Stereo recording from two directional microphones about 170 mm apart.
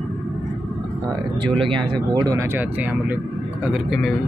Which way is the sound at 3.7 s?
Centre (ahead or behind).